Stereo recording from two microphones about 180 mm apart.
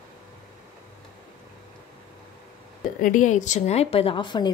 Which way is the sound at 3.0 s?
45° left (ahead or behind).